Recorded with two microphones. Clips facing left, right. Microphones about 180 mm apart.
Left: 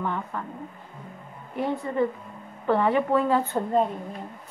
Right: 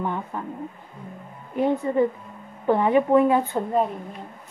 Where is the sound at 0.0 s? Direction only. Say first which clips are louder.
Right 2 dB; 15° right (ahead or behind).